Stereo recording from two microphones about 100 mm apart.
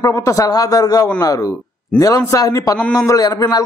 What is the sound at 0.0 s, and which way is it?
Speech, 35° left (ahead or behind).